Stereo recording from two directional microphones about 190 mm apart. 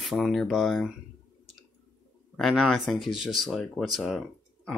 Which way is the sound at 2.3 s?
Centre (ahead or behind).